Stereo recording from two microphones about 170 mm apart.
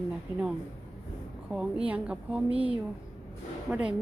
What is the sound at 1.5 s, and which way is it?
A woman's voice, 5° right (ahead or behind).